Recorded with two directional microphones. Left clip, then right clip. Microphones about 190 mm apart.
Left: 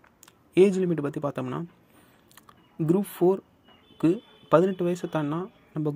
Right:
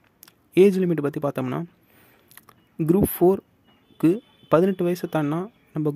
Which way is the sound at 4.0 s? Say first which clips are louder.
Right 4 dB; 40° right (ahead or behind).